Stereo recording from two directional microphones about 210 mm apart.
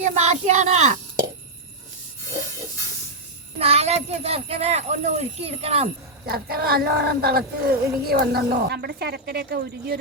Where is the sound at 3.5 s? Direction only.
30° right (ahead or behind).